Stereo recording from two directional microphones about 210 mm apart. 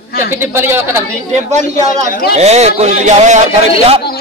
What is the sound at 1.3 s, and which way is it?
Speech, 30° right (ahead or behind).